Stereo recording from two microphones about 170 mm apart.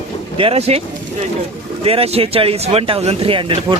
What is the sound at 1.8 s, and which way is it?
Speech, 35° right (ahead or behind).